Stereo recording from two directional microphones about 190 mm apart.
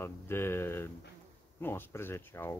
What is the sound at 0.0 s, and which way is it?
Speech, 10° left (ahead or behind).